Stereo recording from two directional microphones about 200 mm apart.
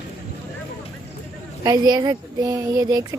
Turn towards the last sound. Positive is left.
turn(degrees=-20)  # may be behind; listen again after turning